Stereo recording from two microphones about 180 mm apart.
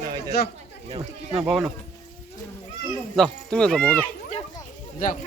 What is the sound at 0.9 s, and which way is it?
Speech, 35° right (ahead or behind).